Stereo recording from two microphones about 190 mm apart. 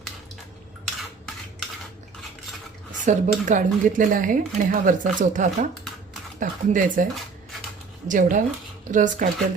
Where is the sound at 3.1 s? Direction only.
40° right (ahead or behind).